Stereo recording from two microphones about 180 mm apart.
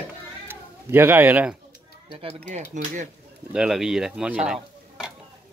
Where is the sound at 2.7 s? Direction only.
45° right (ahead or behind).